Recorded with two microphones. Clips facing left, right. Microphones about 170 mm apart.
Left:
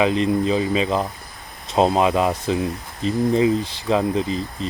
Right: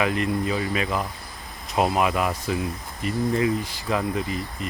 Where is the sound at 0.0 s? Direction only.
25° left (ahead or behind).